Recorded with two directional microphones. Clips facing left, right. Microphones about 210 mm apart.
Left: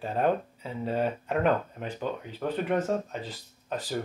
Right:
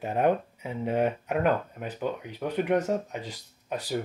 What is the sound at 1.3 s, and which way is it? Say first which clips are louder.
Speech: even; 5° right (ahead or behind).